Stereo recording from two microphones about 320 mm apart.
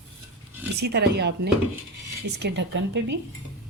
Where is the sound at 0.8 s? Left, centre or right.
Right.